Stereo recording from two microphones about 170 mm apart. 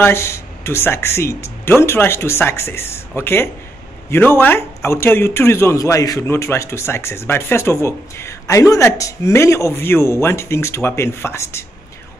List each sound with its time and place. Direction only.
0.0 s a man's voice: 15° left (ahead or behind)